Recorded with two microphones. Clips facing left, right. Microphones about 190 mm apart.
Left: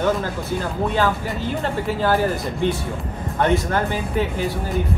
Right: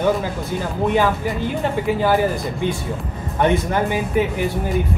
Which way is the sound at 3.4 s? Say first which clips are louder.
Right 2 dB; 15° right (ahead or behind).